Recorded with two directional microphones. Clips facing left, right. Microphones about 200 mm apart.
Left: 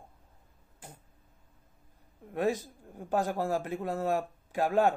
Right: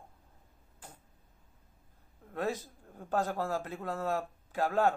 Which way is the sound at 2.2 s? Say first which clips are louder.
Left 5 dB; 15° left (ahead or behind).